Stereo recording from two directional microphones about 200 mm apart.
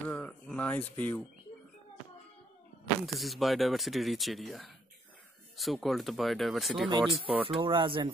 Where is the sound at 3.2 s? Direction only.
Centre (ahead or behind).